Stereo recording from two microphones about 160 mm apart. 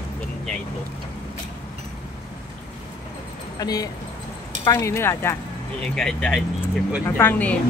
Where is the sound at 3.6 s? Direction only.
25° left (ahead or behind).